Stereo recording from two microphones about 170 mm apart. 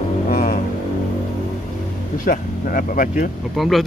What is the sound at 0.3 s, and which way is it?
Vehicle, 55° left (ahead or behind).